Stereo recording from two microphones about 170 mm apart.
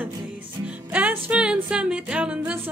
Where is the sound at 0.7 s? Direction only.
10° right (ahead or behind).